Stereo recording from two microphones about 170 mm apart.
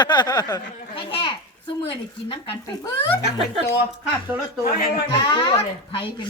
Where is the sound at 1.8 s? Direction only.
35° left (ahead or behind).